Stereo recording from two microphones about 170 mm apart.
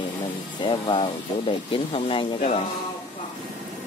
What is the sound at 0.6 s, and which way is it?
Speech, 30° left (ahead or behind).